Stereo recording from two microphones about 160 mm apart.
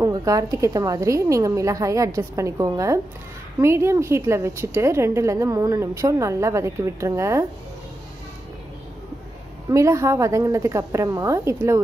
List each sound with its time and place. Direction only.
0.0 s a woman's voice: 20° right (ahead or behind)
9.7 s a woman's voice: 20° right (ahead or behind)